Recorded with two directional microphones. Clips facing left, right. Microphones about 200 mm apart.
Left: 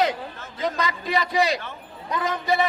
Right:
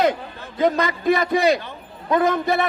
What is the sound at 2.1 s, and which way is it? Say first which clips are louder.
Speech: right 6 dB; 50° right (ahead or behind).